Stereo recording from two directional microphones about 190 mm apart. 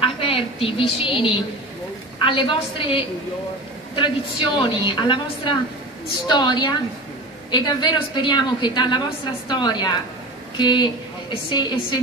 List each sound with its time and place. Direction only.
0.0 s a woman's voice: 30° left (ahead or behind)